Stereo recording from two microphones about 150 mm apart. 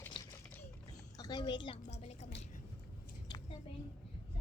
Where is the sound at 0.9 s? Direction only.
25° left (ahead or behind).